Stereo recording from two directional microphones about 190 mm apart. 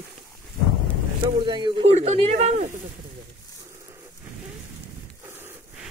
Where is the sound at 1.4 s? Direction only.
25° right (ahead or behind).